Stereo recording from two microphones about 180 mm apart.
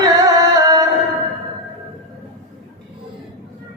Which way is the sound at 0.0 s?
20° right (ahead or behind).